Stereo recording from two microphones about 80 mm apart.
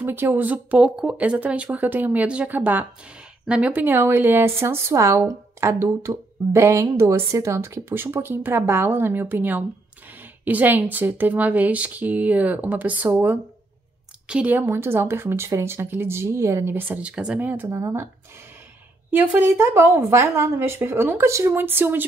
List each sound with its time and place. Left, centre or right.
0.0 s a woman's voice: right
14.2 s a woman's voice: centre
14.5 s speech: right
17.1 s a woman's voice: centre
17.7 s speech: right
19.0 s a woman's voice: right